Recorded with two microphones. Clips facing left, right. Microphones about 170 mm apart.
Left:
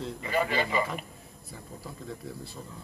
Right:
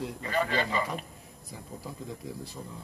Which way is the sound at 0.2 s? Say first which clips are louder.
Left 1 dB; 15° left (ahead or behind).